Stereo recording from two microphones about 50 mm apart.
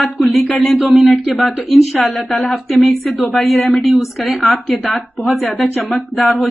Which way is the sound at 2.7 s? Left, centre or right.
Centre.